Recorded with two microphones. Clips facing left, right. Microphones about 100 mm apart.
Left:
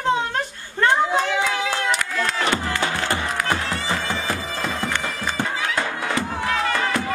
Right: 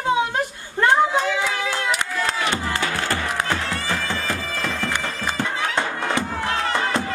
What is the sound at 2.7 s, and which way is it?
Bagpipes, 20° left (ahead or behind).